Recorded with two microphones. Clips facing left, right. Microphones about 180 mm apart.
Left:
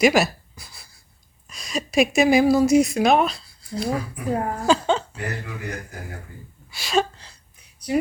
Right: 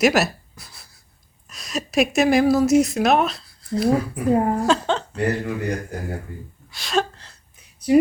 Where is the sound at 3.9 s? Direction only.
25° right (ahead or behind).